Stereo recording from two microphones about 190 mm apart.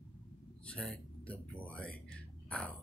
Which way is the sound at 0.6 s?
5° left (ahead or behind).